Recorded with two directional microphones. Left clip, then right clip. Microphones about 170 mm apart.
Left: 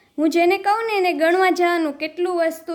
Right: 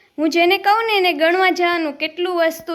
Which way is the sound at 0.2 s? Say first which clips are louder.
Right 2 dB; 15° left (ahead or behind).